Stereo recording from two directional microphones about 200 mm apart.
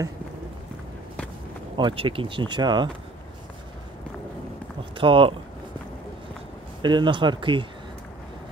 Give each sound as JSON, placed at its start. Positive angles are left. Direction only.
{"t": 1.8, "sound": "speech", "side_deg": -25}
{"t": 4.9, "sound": "speech", "side_deg": -25}
{"t": 6.8, "sound": "speech", "side_deg": -25}